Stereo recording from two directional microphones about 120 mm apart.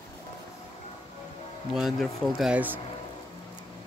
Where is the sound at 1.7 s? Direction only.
Centre (ahead or behind).